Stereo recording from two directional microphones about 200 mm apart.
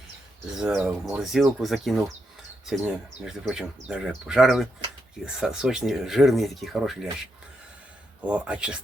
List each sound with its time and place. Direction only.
0.5 s speech: 5° right (ahead or behind)
8.2 s speech: 5° right (ahead or behind)